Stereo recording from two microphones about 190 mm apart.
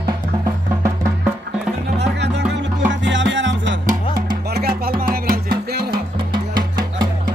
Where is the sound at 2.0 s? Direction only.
65° right (ahead or behind).